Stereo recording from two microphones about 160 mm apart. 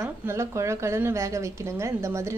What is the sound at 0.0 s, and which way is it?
A woman's voice, 15° right (ahead or behind).